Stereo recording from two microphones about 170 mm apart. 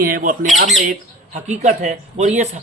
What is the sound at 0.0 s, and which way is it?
Speech, 55° right (ahead or behind).